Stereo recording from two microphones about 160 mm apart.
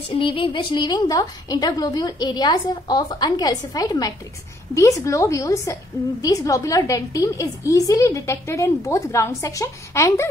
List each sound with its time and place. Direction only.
0.1 s a woman's voice: 35° left (ahead or behind); by 10.2 s 20° left (ahead or behind)